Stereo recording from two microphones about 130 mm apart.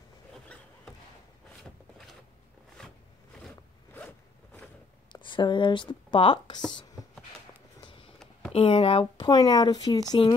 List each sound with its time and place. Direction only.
1.6 s a sound: centre (ahead or behind)
5.1 s speech: 40° left (ahead or behind)
8.5 s speech: 45° left (ahead or behind)